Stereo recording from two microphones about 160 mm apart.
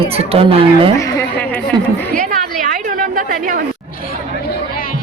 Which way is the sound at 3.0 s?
60° right (ahead or behind).